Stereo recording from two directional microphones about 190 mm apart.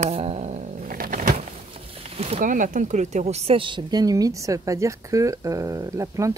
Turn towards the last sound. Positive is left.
turn(degrees=-15)  # may be behind; listen again after turning